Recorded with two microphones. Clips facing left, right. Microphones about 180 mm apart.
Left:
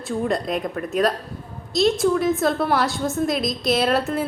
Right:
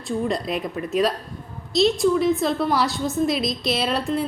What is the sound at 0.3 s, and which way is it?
A woman's voice, centre (ahead or behind).